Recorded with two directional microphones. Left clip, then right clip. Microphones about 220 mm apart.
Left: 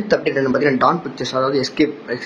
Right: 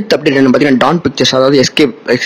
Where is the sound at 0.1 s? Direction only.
35° right (ahead or behind).